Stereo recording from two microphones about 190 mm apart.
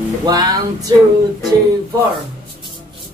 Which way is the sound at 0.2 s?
20° right (ahead or behind).